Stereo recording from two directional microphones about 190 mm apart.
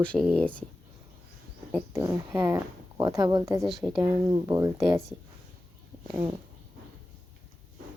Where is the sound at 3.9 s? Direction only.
20° right (ahead or behind).